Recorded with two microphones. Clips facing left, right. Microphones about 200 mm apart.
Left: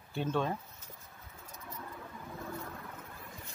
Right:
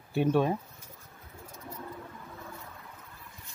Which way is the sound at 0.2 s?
15° right (ahead or behind).